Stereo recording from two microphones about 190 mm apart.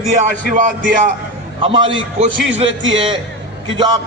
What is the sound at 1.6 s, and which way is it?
Speech, 25° right (ahead or behind).